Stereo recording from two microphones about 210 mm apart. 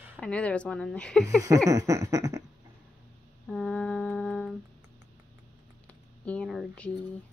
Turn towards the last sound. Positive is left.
turn(degrees=0)  # may be behind; listen again after turning